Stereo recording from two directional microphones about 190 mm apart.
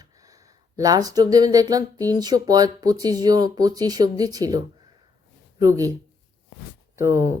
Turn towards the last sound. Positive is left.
turn(degrees=-15)  # may be behind; listen again after turning